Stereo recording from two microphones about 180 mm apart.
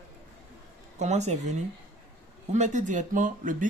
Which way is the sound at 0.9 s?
40° right (ahead or behind).